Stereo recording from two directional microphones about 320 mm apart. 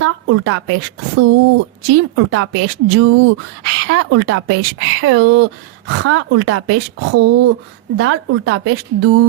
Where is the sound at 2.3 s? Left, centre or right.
Right.